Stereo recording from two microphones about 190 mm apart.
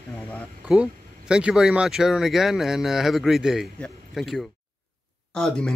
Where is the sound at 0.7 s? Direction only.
5° right (ahead or behind).